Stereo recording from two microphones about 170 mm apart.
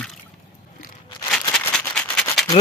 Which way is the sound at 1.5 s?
10° left (ahead or behind).